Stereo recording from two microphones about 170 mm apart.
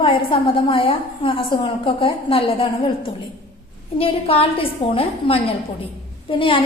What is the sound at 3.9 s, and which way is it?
A woman's voice, 35° left (ahead or behind).